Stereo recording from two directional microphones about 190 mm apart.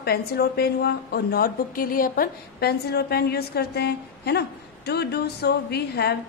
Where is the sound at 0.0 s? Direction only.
55° left (ahead or behind).